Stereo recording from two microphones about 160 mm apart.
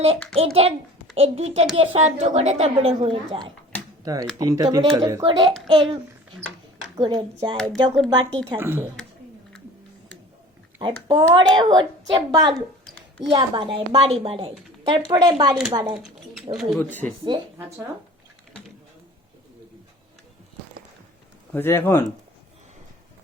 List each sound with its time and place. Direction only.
0.3 s a woman's voice: 40° right (ahead or behind)
4.0 s a woman's voice: 25° right (ahead or behind)
5.2 s a woman's voice: 35° right (ahead or behind)
7.5 s speech: 5° left (ahead or behind)
8.1 s a woman's voice: 30° right (ahead or behind)
8.5 s speech: 15° right (ahead or behind)
10.8 s a woman's voice: 30° right (ahead or behind)
12.5 s a sound: 5° left (ahead or behind)
13.3 s a woman's voice: 30° right (ahead or behind)
16.0 s speech: centre (ahead or behind)
16.9 s speech: 10° left (ahead or behind)
21.5 s speech: 15° left (ahead or behind)